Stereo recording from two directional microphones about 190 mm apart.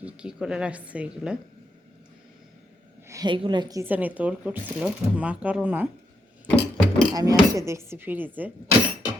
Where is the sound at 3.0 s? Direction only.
20° right (ahead or behind).